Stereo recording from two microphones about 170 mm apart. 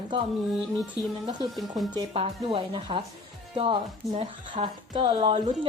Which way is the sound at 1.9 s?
35° right (ahead or behind).